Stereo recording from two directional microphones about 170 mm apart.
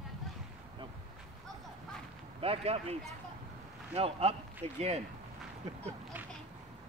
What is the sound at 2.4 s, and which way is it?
Speech, 35° right (ahead or behind).